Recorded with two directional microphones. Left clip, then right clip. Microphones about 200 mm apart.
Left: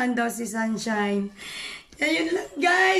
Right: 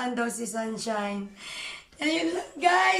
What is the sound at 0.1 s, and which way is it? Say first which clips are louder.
A woman's voice: left 3 dB; 5° right (ahead or behind).